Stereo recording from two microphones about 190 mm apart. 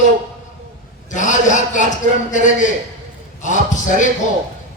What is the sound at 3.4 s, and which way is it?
Speech, 40° left (ahead or behind).